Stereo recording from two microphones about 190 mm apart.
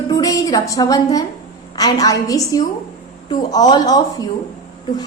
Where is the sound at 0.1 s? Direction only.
20° left (ahead or behind).